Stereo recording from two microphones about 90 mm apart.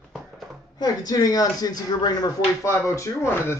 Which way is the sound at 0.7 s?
45° left (ahead or behind).